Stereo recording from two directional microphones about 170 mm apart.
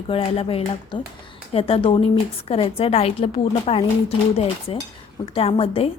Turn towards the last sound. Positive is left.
turn(degrees=35)  # may be behind; listen again after turning